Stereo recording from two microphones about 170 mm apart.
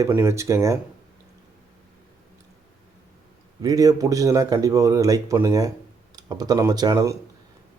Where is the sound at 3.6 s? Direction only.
20° right (ahead or behind).